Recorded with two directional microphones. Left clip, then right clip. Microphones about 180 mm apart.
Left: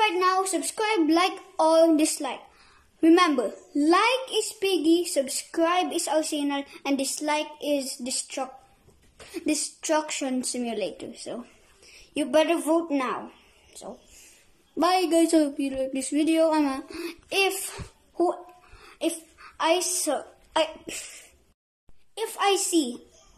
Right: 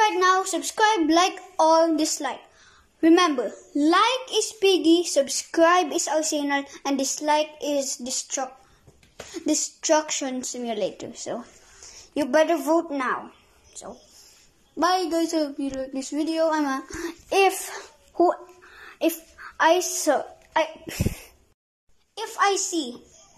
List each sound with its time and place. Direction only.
0.0 s a sound: 10° left (ahead or behind)
0.7 s child singing: 5° left (ahead or behind)
1.6 s a woman's voice: 10° left (ahead or behind)
3.0 s child singing: centre (ahead or behind)
12.9 s a woman's voice: 15° left (ahead or behind)
14.8 s a woman's voice: 15° left (ahead or behind)
17.0 s a child's voice: centre (ahead or behind)
22.1 s a woman's voice: 20° left (ahead or behind)